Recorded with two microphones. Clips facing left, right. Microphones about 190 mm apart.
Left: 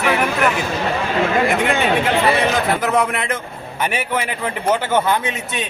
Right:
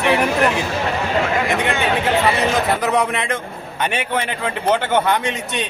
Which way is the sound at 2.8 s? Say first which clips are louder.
Even; centre (ahead or behind).